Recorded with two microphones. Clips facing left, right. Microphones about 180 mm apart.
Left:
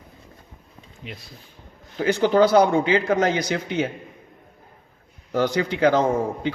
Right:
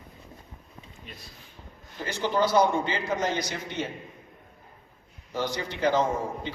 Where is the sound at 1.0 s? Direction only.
90° left.